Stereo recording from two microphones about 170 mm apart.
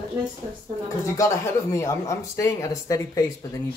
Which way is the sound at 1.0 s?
15° left (ahead or behind).